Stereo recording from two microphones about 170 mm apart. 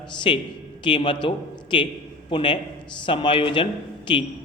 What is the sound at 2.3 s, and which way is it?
Speech, 30° left (ahead or behind).